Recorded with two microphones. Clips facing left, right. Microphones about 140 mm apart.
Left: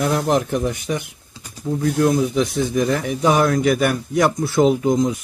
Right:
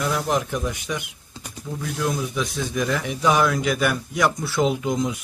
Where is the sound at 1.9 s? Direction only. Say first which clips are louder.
Left 7 dB; 60° left (ahead or behind).